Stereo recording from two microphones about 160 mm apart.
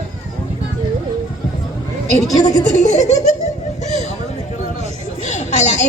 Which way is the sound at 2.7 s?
45° left (ahead or behind).